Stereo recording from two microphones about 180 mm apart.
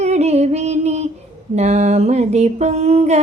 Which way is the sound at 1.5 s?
40° right (ahead or behind).